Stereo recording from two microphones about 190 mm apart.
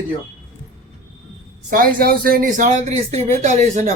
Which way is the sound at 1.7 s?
50° right (ahead or behind).